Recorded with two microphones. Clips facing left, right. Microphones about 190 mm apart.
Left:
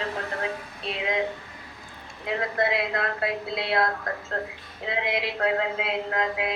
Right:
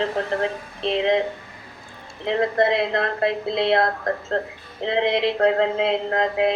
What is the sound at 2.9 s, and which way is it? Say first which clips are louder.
Speech: right 6 dB; 35° right (ahead or behind).